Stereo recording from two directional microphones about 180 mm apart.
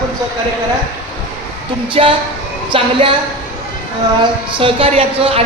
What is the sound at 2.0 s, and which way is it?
Speech, 35° right (ahead or behind).